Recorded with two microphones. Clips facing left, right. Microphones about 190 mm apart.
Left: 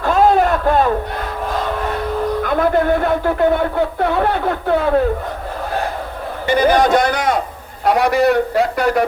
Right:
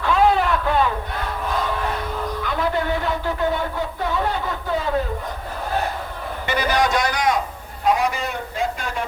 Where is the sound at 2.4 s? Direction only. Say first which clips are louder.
Left 7 dB; 50° left (ahead or behind).